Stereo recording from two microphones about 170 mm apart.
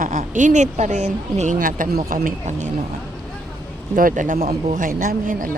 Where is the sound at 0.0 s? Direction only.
50° right (ahead or behind).